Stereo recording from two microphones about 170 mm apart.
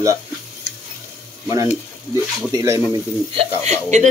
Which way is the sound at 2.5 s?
20° right (ahead or behind).